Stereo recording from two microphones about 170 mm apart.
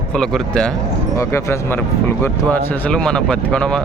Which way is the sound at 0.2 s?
5° left (ahead or behind).